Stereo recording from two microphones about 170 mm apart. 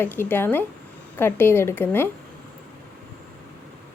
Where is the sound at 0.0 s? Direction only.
10° left (ahead or behind).